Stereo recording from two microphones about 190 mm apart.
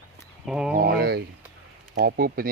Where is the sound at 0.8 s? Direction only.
55° right (ahead or behind).